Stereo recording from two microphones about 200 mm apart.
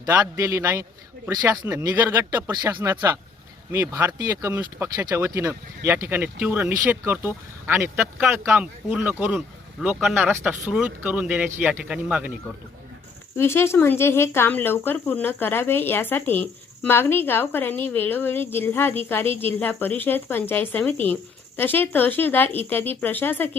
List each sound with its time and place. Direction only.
0.0 s speech: 15° right (ahead or behind)
13.3 s speech: 10° left (ahead or behind)